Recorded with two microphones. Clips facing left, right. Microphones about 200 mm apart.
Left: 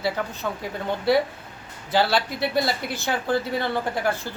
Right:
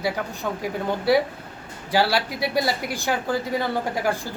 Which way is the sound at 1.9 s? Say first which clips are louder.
Even; 10° right (ahead or behind).